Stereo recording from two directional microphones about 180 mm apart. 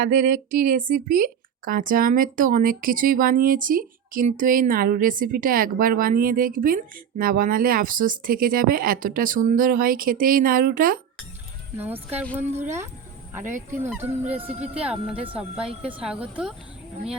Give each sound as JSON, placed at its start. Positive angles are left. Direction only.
{"t": 0.0, "sound": "a woman's voice", "side_deg": -50}
{"t": 11.8, "sound": "speech", "side_deg": -10}
{"t": 13.4, "sound": "a woman's voice", "side_deg": -45}
{"t": 14.1, "sound": "speech", "side_deg": -10}
{"t": 14.5, "sound": "speech", "side_deg": -35}
{"t": 14.8, "sound": "speech", "side_deg": -5}